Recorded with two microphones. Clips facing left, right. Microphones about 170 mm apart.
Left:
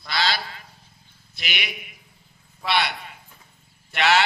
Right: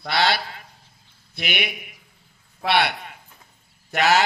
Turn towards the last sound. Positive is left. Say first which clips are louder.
# right 1 dB
turn(degrees=-40)  # may be behind; listen again after turning